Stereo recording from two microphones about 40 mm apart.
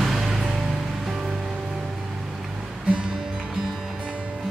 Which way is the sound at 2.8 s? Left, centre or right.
Right.